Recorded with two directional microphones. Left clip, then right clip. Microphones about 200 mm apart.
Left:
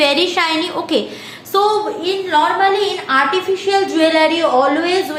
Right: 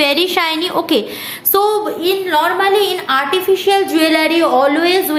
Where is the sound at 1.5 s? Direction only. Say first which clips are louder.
Even; 60° right (ahead or behind).